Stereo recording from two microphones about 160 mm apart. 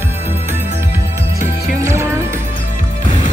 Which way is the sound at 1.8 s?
20° right (ahead or behind).